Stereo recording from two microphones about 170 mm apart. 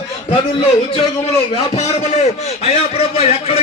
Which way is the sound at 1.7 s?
40° left (ahead or behind).